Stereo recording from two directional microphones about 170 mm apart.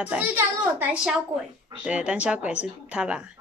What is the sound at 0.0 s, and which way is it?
A woman's voice, 10° right (ahead or behind).